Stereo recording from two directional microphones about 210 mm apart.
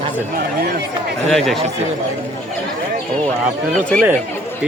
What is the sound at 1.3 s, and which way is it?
Speech, centre (ahead or behind).